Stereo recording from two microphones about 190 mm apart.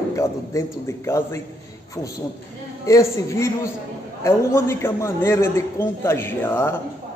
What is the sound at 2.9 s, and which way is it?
A man's voice, 15° left (ahead or behind).